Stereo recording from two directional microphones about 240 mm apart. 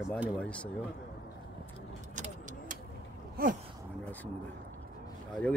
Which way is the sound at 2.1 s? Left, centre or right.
Right.